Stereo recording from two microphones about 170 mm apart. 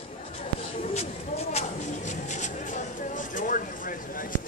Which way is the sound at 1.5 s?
40° left (ahead or behind).